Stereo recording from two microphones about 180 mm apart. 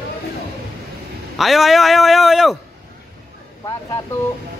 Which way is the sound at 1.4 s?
Centre (ahead or behind).